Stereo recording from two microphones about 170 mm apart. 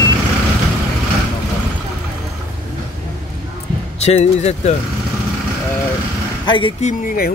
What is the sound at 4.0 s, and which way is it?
Speech, 40° left (ahead or behind).